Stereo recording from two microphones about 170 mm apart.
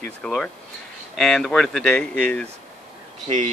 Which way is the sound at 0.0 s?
5° left (ahead or behind).